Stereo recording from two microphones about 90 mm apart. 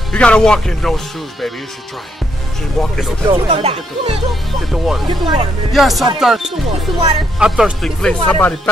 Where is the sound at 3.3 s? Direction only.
85° right.